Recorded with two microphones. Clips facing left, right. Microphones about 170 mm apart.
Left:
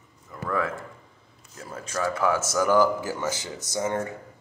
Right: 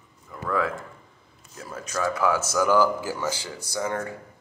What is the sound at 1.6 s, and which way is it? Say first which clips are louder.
Speech: right 1 dB; 30° left (ahead or behind).